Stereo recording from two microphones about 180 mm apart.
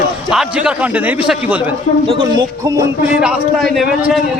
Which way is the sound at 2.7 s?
20° right (ahead or behind).